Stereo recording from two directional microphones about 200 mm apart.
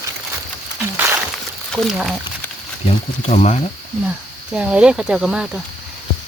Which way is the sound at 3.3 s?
35° left (ahead or behind).